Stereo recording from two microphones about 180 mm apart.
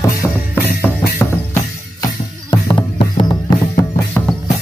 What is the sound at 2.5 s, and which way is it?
Music, 25° left (ahead or behind).